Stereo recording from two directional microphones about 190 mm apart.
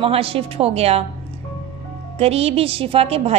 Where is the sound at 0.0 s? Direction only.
30° right (ahead or behind).